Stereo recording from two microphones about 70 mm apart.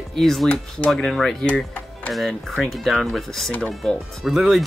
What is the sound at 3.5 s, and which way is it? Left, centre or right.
Speech, left.